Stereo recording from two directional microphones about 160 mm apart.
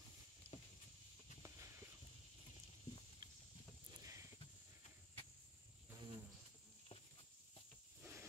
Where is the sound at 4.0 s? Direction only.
20° right (ahead or behind).